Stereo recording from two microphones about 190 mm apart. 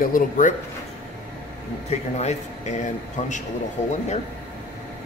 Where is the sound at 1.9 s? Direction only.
35° left (ahead or behind).